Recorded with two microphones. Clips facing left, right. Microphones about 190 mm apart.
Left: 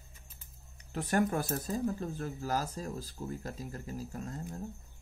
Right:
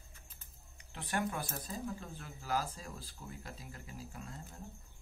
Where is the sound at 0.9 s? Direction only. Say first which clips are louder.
Left 8 dB; 40° left (ahead or behind).